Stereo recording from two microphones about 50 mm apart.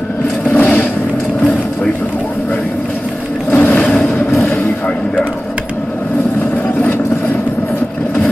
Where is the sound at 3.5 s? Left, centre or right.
Left.